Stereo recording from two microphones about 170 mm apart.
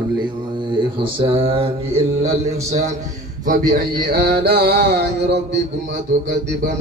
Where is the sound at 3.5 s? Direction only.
55° right (ahead or behind); by 5.6 s 80° right.